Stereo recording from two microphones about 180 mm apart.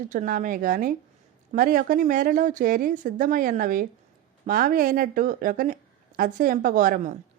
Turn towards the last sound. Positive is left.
turn(degrees=-50)  # may be behind; listen again after turning